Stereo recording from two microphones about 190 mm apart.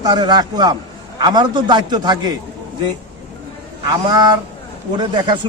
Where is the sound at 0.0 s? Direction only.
20° right (ahead or behind).